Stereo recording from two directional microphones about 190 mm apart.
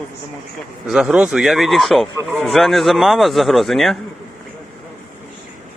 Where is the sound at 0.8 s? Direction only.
5° right (ahead or behind).